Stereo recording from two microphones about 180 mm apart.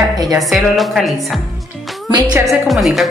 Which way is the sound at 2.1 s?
25° right (ahead or behind).